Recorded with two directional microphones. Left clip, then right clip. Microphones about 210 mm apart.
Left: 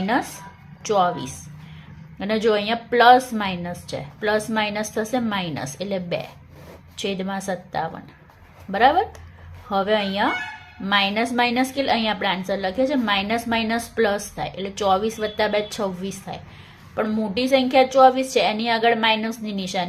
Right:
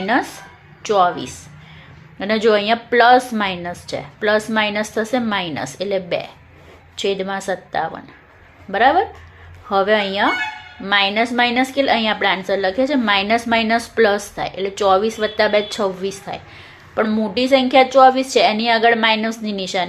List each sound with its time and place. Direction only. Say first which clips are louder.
0.0 s a woman's voice: right 4 dB; 10° left (ahead or behind)